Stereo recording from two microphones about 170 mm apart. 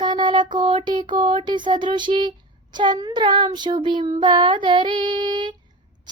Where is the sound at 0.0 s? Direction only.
25° right (ahead or behind).